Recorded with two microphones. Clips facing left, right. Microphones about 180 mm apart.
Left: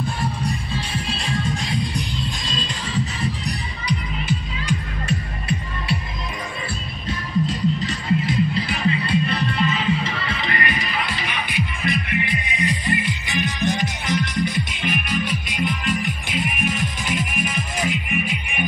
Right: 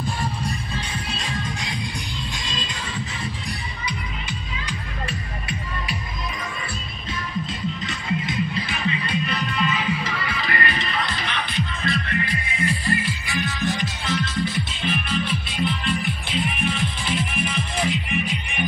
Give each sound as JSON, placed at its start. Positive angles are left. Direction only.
{"t": 7.1, "sound": "music", "side_deg": 35}
{"t": 10.2, "sound": "music", "side_deg": 20}